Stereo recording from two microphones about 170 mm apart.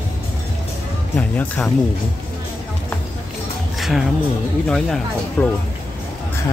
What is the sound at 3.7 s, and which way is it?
Music, centre (ahead or behind).